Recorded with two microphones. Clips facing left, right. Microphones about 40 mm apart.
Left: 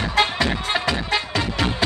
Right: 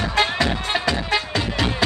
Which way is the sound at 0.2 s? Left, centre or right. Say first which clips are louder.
Even; centre.